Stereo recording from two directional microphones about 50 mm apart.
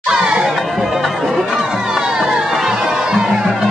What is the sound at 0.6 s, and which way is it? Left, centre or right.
Music, centre.